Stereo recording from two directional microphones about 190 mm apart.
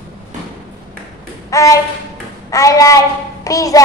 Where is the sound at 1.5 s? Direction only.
15° left (ahead or behind).